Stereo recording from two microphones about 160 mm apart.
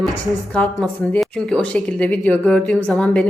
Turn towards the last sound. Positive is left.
turn(degrees=5)  # may be behind; listen again after turning